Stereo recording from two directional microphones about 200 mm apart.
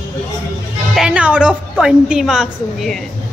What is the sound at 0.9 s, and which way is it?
Speech, 5° right (ahead or behind).